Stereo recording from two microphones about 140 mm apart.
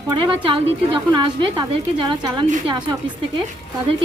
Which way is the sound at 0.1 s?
35° right (ahead or behind).